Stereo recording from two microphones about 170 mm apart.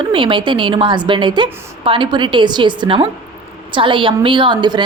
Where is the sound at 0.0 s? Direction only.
30° right (ahead or behind).